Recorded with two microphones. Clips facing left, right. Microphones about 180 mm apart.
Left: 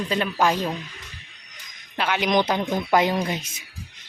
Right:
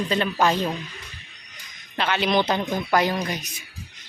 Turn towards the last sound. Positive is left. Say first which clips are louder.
# left 2 dB
turn(degrees=25)  # may be behind; listen again after turning